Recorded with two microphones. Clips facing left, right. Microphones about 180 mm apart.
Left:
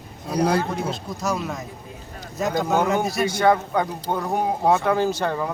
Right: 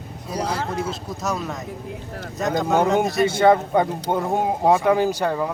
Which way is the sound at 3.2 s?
25° right (ahead or behind).